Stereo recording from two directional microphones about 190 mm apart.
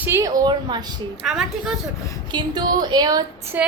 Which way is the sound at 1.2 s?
Centre (ahead or behind).